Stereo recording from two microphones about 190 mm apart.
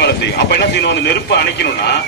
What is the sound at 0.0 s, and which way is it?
A man's voice, 65° left (ahead or behind).